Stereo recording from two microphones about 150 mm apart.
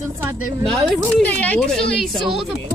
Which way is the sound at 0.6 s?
5° left (ahead or behind).